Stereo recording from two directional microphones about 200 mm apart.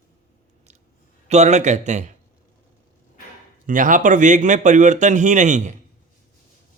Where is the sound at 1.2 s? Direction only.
35° right (ahead or behind).